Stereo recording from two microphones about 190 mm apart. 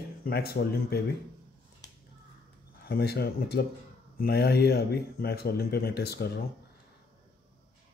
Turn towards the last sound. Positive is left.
turn(degrees=60)  # may be behind; listen again after turning